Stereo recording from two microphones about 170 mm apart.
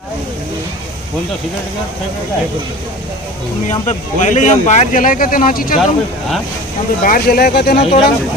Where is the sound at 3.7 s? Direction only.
45° left (ahead or behind).